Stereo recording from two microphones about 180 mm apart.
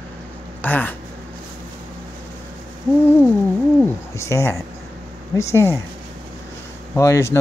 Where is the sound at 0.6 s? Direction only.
10° left (ahead or behind).